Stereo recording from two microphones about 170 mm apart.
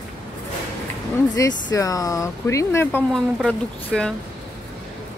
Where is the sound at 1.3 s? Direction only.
20° left (ahead or behind).